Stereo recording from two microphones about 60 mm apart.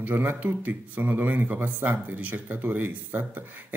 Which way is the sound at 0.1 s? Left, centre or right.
Right.